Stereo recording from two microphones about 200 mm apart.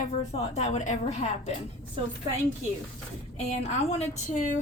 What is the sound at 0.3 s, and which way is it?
A woman's voice, 35° left (ahead or behind).